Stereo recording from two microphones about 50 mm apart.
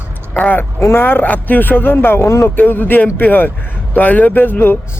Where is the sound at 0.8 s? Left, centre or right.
Left.